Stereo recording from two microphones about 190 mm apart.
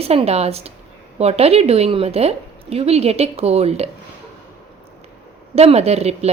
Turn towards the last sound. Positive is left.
turn(degrees=-35)  # may be behind; listen again after turning